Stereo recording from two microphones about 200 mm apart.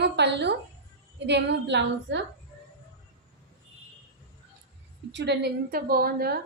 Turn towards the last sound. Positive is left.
turn(degrees=-50)  # may be behind; listen again after turning